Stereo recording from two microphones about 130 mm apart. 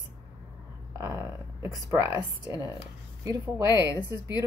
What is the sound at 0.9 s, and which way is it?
A woman's voice, 25° right (ahead or behind).